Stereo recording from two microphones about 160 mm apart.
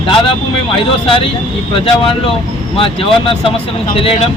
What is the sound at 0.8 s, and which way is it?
Speech, 35° left (ahead or behind).